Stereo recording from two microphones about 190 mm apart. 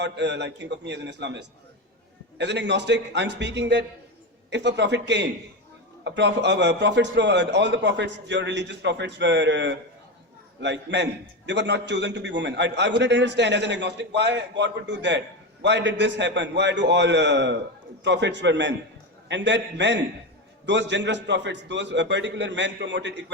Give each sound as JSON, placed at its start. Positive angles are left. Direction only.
{"t": 0.0, "sound": "a man's voice", "side_deg": -65}